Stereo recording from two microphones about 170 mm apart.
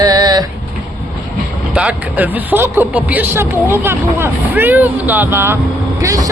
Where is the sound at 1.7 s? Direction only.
5° right (ahead or behind).